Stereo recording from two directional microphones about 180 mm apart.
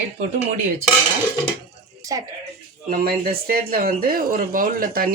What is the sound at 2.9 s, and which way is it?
Speech, 55° right (ahead or behind).